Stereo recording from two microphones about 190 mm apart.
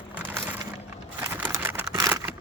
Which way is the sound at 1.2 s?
10° right (ahead or behind).